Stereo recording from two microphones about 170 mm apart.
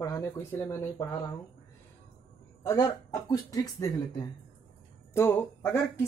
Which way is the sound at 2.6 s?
20° left (ahead or behind).